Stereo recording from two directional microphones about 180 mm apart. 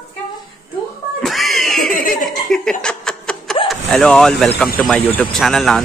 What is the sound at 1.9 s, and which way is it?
Laughter, 50° left (ahead or behind).